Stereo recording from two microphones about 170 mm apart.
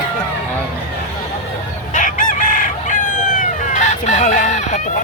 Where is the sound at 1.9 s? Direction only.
50° left (ahead or behind).